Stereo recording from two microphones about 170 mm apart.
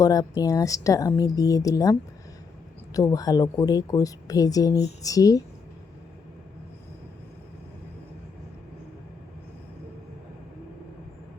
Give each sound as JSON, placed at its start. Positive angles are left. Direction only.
{"t": 0.0, "sound": "speech", "side_deg": 20}